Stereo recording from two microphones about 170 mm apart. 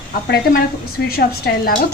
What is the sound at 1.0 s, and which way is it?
Speech, 65° left (ahead or behind).